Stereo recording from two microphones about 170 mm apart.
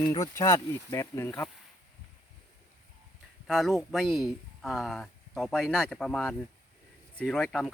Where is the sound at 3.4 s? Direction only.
Centre (ahead or behind).